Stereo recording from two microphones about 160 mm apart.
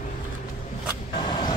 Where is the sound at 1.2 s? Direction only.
30° left (ahead or behind).